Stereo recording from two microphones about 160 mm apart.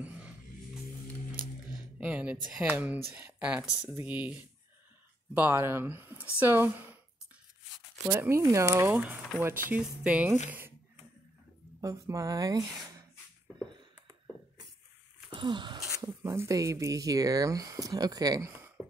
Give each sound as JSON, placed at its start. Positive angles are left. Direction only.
{"t": 2.0, "sound": "speech", "side_deg": -10}
{"t": 8.1, "sound": "speech", "side_deg": -20}
{"t": 11.8, "sound": "speech", "side_deg": -20}
{"t": 15.3, "sound": "a sound", "side_deg": -30}
{"t": 16.2, "sound": "speech", "side_deg": -15}